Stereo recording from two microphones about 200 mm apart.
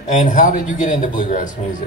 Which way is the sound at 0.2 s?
40° left (ahead or behind).